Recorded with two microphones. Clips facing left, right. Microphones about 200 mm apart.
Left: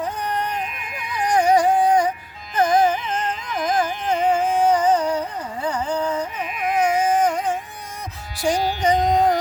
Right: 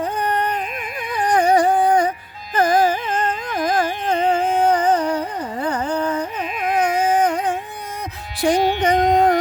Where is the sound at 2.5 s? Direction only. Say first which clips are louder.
Right 1 dB; 60° right (ahead or behind).